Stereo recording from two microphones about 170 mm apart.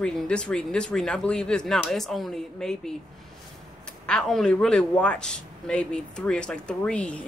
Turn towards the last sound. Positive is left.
turn(degrees=5)  # may be behind; listen again after turning